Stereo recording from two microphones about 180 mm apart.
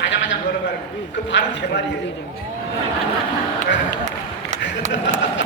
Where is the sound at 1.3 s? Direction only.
75° left (ahead or behind).